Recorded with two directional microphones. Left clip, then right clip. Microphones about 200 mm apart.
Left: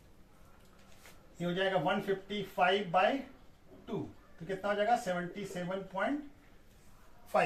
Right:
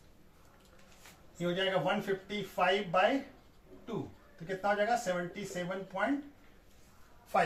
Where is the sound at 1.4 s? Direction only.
5° right (ahead or behind).